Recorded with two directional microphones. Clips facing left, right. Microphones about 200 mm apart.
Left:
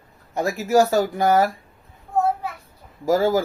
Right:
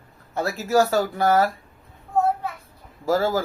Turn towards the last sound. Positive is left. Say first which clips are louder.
# left 3 dB
turn(degrees=15)  # may be behind; listen again after turning